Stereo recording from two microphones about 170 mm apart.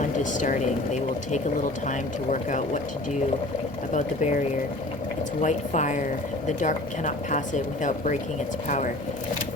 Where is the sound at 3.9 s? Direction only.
45° left (ahead or behind).